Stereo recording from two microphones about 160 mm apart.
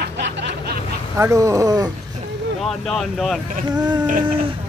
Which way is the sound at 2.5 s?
Centre (ahead or behind).